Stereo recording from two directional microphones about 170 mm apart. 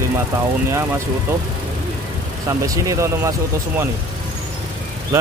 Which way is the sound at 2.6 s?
20° right (ahead or behind).